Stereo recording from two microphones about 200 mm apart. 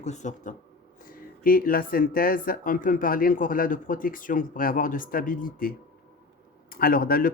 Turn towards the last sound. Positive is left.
turn(degrees=45)  # may be behind; listen again after turning